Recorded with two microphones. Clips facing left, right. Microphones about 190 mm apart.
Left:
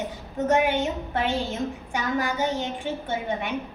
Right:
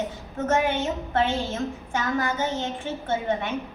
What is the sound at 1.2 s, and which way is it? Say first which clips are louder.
A woman's voice: right 2 dB; 10° left (ahead or behind).